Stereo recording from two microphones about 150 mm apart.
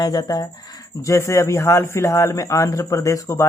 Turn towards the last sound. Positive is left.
turn(degrees=20)  # may be behind; listen again after turning